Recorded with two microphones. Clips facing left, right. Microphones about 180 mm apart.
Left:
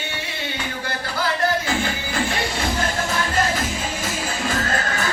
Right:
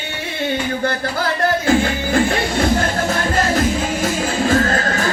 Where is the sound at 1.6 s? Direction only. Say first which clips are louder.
Right 8 dB; 50° right (ahead or behind).